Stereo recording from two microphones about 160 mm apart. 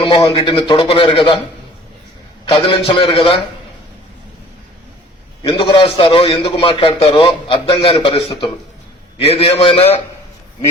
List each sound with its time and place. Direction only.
0.0 s a man's voice: 30° left (ahead or behind)
2.5 s a man's voice: 30° left (ahead or behind)
5.4 s a man's voice: 35° left (ahead or behind)